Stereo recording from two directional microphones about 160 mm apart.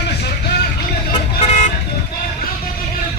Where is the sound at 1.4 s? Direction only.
40° left (ahead or behind).